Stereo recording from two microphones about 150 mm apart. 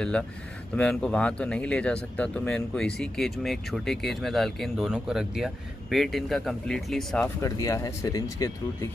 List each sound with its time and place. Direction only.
0.7 s speech: 10° left (ahead or behind)
7.4 s speech: 25° left (ahead or behind)